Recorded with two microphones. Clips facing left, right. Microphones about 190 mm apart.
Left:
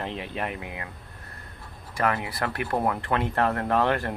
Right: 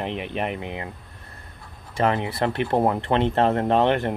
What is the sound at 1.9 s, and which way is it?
Speech, 25° right (ahead or behind).